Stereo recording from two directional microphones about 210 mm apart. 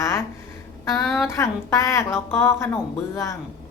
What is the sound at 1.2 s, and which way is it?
A woman's voice, 15° left (ahead or behind).